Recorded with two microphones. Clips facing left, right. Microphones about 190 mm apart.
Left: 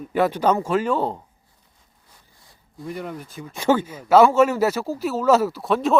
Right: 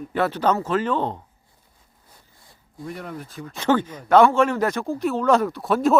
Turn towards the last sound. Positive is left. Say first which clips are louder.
# right 1 dB
turn(degrees=0)  # may be behind; listen again after turning